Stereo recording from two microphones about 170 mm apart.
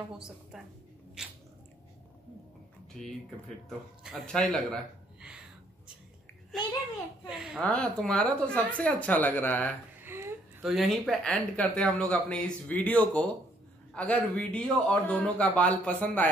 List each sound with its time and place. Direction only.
1.2 s biting: 5° right (ahead or behind)
3.0 s speech: centre (ahead or behind)
7.2 s speech: 5° right (ahead or behind)
9.9 s a sound: 15° right (ahead or behind)
10.6 s speech: centre (ahead or behind)